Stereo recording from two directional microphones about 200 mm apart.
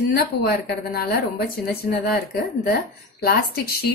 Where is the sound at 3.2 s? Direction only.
50° left (ahead or behind).